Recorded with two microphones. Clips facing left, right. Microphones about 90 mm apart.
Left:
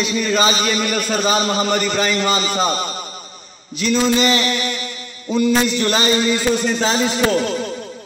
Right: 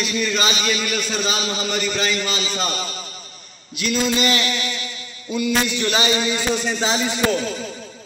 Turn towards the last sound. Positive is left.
turn(degrees=60)  # may be behind; listen again after turning